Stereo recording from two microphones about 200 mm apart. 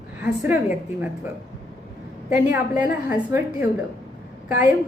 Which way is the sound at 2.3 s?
10° right (ahead or behind).